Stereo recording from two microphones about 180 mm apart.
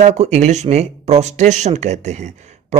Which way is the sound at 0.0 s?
40° right (ahead or behind).